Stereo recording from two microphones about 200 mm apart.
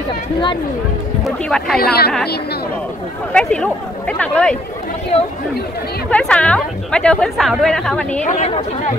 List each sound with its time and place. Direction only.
1.2 s a woman's voice: centre (ahead or behind)
1.8 s a woman's voice: 50° left (ahead or behind)
3.3 s a woman's voice: 5° left (ahead or behind)
6.0 s a woman's voice: 5° left (ahead or behind)
8.3 s speech: 35° left (ahead or behind)